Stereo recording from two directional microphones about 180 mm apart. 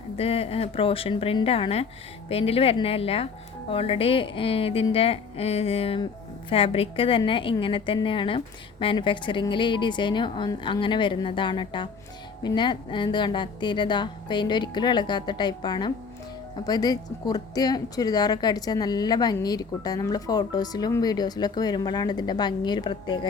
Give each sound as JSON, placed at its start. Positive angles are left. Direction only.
{"t": 0.2, "sound": "a woman's voice", "side_deg": 35}